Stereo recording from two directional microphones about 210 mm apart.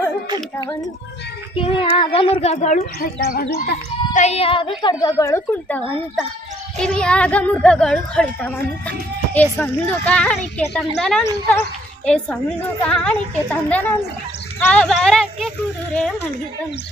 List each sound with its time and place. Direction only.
0.6 s a child's voice: 15° left (ahead or behind); by 4.2 s 45° left (ahead or behind)
4.2 s a child's voice: 30° left (ahead or behind); by 5.8 s 10° left (ahead or behind)
6.8 s a woman's voice: 5° left (ahead or behind)